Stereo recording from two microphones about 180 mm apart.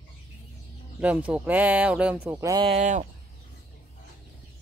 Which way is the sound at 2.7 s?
40° right (ahead or behind).